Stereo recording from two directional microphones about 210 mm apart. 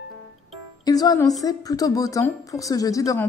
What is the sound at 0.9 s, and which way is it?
A woman's voice, 20° left (ahead or behind).